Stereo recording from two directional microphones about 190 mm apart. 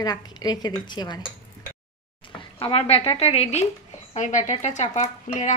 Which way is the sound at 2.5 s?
30° left (ahead or behind).